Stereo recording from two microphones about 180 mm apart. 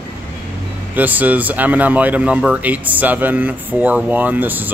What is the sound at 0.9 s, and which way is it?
Speech, 10° right (ahead or behind).